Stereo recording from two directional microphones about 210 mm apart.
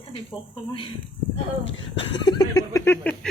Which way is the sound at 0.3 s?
25° left (ahead or behind).